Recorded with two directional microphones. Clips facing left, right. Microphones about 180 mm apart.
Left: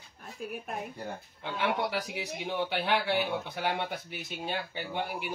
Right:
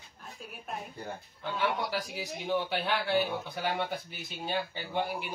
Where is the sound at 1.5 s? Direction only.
65° left (ahead or behind).